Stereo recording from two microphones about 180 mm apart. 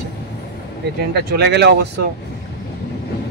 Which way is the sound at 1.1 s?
65° right (ahead or behind).